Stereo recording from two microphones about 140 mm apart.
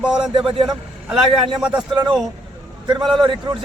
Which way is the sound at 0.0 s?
5° right (ahead or behind).